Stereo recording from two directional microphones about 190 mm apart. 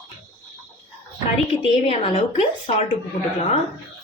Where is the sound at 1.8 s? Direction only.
30° left (ahead or behind).